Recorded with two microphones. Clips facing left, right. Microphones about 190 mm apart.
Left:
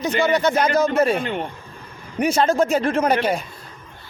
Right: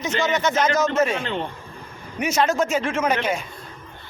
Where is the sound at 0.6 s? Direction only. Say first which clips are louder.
Left 2 dB; 35° left (ahead or behind).